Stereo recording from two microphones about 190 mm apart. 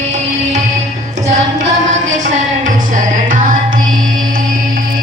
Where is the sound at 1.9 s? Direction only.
40° right (ahead or behind).